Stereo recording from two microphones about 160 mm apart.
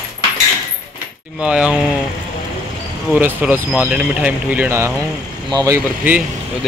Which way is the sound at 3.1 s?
10° right (ahead or behind).